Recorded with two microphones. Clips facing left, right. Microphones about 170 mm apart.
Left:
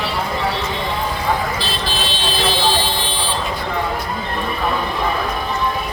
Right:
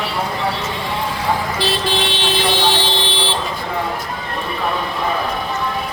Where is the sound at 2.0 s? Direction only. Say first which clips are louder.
Right 2 dB; 75° right (ahead or behind).